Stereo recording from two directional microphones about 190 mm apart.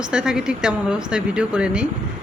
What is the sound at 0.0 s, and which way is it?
Speech, 5° right (ahead or behind).